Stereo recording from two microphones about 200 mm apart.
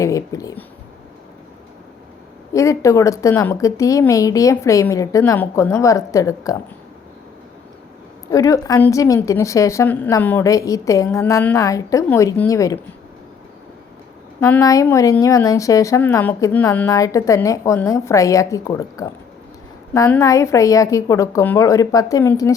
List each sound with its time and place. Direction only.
0.0 s a woman's voice: 15° left (ahead or behind)
2.5 s a woman's voice: 15° left (ahead or behind)
8.3 s a woman's voice: 15° left (ahead or behind)
14.4 s a woman's voice: 15° left (ahead or behind)